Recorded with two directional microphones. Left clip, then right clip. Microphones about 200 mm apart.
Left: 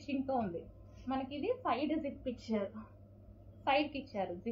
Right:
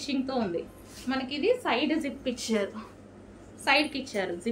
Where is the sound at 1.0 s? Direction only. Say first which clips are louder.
Right 10 dB; 25° right (ahead or behind).